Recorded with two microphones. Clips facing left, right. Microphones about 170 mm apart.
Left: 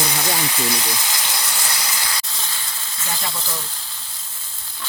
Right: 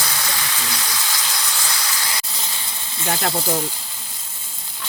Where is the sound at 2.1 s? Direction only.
15° right (ahead or behind).